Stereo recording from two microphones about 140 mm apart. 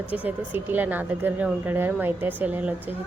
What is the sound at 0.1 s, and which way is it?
A woman's voice, 10° right (ahead or behind).